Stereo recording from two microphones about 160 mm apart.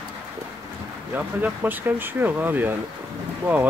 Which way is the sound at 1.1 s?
10° right (ahead or behind).